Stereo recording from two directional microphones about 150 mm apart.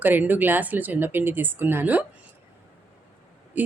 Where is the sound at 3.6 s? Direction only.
10° right (ahead or behind).